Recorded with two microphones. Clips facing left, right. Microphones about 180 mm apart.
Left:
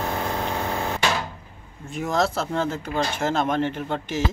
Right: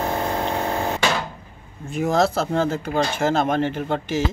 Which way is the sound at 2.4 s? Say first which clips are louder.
Right 4 dB; 40° right (ahead or behind).